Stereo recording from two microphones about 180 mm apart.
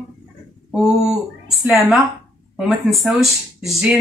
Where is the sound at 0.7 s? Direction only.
5° right (ahead or behind).